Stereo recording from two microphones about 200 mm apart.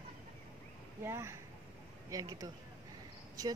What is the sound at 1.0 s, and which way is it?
Speech, 10° right (ahead or behind).